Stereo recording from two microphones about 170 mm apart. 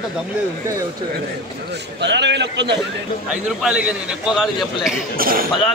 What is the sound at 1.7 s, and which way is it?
A man's voice, 90° right.